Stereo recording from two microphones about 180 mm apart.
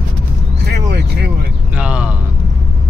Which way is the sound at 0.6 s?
60° right (ahead or behind).